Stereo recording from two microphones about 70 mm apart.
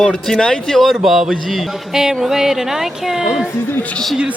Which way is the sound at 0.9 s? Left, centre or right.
Centre.